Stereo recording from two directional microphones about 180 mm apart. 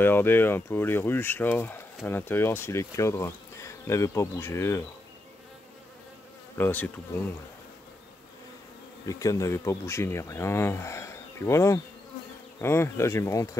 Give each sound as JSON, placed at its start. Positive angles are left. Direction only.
{"t": 0.0, "sound": "speech", "side_deg": 10}
{"t": 6.6, "sound": "speech", "side_deg": 10}
{"t": 9.0, "sound": "speech", "side_deg": 20}